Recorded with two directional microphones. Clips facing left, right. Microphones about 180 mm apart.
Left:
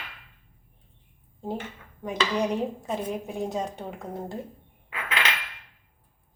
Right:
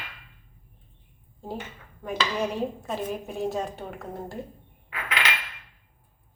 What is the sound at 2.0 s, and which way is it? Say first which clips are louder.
A woman's voice: left 2 dB; 20° left (ahead or behind).